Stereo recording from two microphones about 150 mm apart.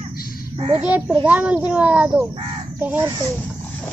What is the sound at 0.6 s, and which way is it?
Speech, 45° right (ahead or behind).